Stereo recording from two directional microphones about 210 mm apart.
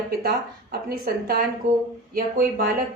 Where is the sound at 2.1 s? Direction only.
45° right (ahead or behind).